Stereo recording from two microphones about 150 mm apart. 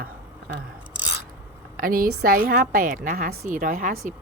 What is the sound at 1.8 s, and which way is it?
Speech, 70° right (ahead or behind).